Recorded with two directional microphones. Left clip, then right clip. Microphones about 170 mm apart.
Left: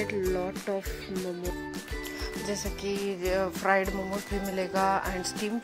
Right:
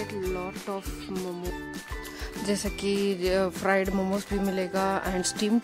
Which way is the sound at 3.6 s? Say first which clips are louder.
Right 1 dB; 40° right (ahead or behind).